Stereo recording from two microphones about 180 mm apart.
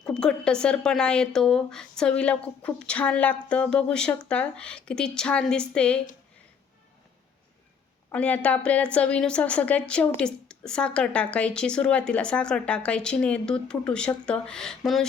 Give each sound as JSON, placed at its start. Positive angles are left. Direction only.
{"t": 0.0, "sound": "speech", "side_deg": 5}
{"t": 8.1, "sound": "a woman's voice", "side_deg": 5}